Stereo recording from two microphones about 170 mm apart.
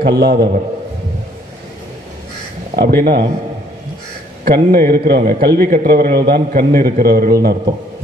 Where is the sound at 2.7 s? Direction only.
60° right (ahead or behind).